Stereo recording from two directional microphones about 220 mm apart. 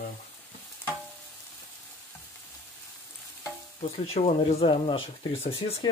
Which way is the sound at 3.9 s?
30° left (ahead or behind).